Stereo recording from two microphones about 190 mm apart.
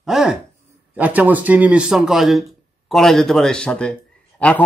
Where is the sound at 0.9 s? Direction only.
10° right (ahead or behind).